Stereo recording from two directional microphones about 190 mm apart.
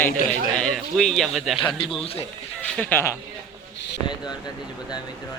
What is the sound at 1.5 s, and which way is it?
Speech, 25° left (ahead or behind).